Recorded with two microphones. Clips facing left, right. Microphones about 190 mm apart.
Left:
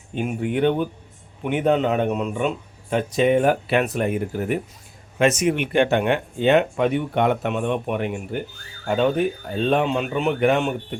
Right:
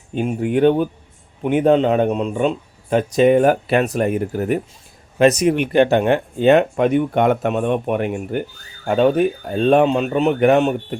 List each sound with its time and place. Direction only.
0.1 s speech: 35° right (ahead or behind)
2.9 s speech: 40° right (ahead or behind)